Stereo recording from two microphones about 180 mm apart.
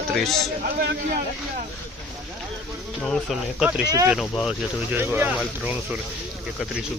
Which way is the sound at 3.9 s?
10° right (ahead or behind).